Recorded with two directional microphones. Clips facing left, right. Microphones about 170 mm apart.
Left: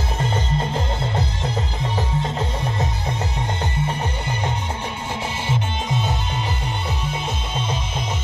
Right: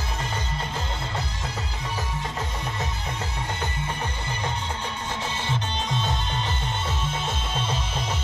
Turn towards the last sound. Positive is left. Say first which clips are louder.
# left 3 dB
turn(degrees=10)  # may be behind; listen again after turning